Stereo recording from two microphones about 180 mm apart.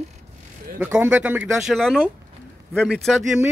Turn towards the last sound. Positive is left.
turn(degrees=0)  # may be behind; listen again after turning